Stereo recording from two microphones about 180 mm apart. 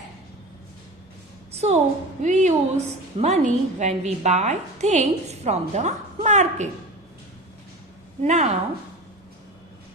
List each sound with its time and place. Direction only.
1.5 s a woman's voice: 35° right (ahead or behind)
8.2 s a woman's voice: 40° right (ahead or behind)